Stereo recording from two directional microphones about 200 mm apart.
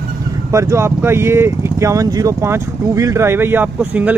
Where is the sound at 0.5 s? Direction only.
15° right (ahead or behind).